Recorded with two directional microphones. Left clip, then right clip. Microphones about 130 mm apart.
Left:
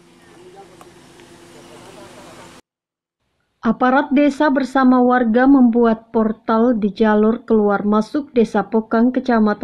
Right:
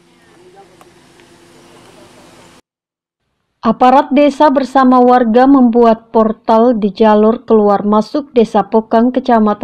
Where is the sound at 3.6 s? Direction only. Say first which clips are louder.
Right 7 dB; 30° right (ahead or behind).